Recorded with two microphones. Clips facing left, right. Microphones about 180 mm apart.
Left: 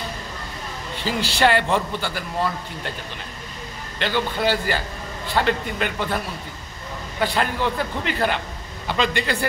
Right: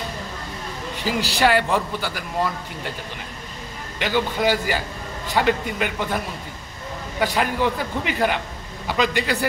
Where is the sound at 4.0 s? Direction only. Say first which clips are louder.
Right 1 dB; 10° right (ahead or behind).